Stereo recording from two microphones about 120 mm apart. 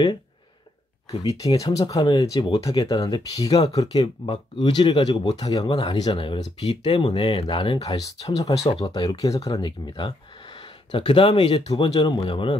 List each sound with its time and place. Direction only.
1.4 s speech: 30° left (ahead or behind)
8.5 s speech: 55° left (ahead or behind)
8.8 s speech: 35° left (ahead or behind)
12.3 s speech: 45° left (ahead or behind)